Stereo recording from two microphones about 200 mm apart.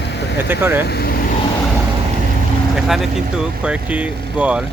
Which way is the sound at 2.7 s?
Centre (ahead or behind).